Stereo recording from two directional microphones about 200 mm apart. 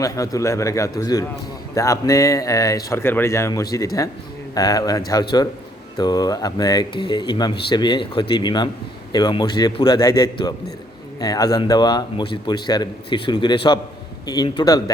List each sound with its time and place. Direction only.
0.0 s speech: 15° left (ahead or behind)